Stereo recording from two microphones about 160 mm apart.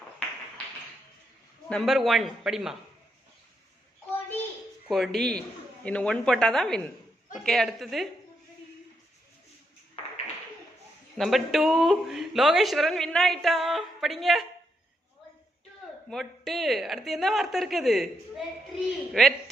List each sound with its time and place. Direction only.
1.7 s speech: centre (ahead or behind)
4.9 s speech: centre (ahead or behind)
10.0 s a sound: 40° left (ahead or behind)
11.2 s speech: centre (ahead or behind)
16.0 s speech: centre (ahead or behind)